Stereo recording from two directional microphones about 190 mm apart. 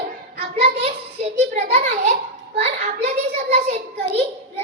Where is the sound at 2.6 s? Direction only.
35° right (ahead or behind).